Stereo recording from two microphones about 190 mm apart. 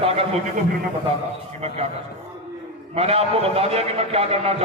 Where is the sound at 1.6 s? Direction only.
35° right (ahead or behind).